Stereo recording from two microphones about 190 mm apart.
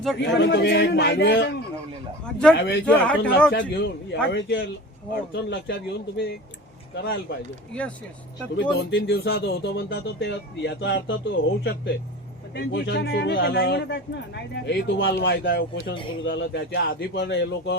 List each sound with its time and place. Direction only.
0.2 s speech: 70° left (ahead or behind)
2.2 s speech: 5° left (ahead or behind)
2.6 s speech: 65° left (ahead or behind)
2.8 s a man's voice: 5° left (ahead or behind)
3.5 s speech: 65° left (ahead or behind)
5.7 s speech: 55° left (ahead or behind)
6.9 s speech: 80° left
7.7 s a man's voice: 5° left (ahead or behind)
8.8 s speech: 60° left (ahead or behind)
12.5 s speech: 60° left (ahead or behind)